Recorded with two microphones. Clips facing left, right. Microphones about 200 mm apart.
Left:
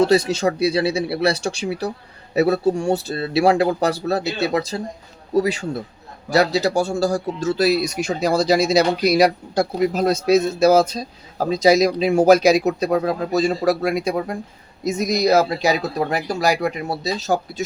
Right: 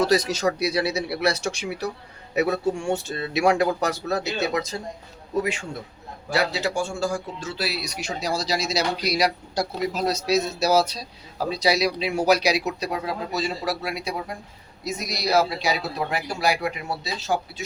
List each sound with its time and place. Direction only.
0.0 s a man's voice: 30° left (ahead or behind)